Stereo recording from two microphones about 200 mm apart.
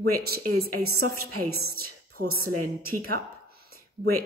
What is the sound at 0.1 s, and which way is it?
Speech, 50° right (ahead or behind).